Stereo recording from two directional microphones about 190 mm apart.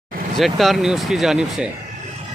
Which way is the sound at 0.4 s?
Centre (ahead or behind).